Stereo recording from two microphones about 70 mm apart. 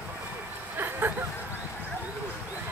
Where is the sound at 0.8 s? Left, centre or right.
Right.